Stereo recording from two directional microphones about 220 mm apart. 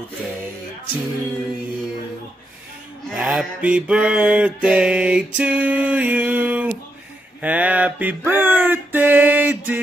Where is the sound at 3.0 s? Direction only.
Centre (ahead or behind).